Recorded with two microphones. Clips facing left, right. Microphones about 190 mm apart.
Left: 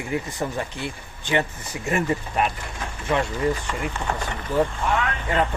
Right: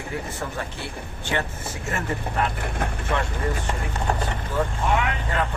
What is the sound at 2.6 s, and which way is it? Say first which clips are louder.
Speech: right 5 dB; 60° right (ahead or behind).